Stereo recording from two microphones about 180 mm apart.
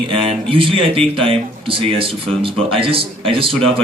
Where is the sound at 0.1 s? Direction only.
30° right (ahead or behind).